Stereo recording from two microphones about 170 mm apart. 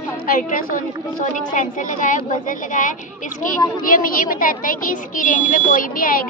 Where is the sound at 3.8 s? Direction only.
55° left (ahead or behind).